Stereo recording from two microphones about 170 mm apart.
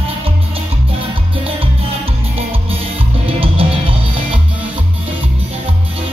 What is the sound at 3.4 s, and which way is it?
Music, 35° right (ahead or behind).